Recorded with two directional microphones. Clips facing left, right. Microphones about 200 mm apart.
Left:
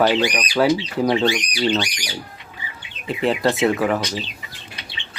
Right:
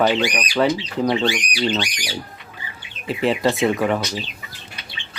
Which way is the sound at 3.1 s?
Centre (ahead or behind).